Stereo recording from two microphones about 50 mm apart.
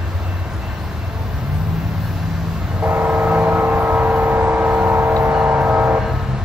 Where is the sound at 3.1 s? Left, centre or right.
Right.